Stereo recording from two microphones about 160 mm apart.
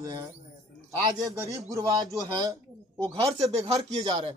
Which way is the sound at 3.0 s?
40° right (ahead or behind).